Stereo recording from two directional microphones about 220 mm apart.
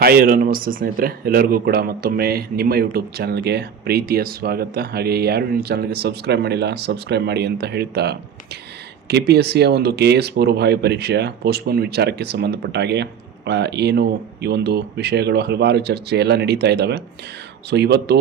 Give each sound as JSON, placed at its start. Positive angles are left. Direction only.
{"t": 0.0, "sound": "speech", "side_deg": -45}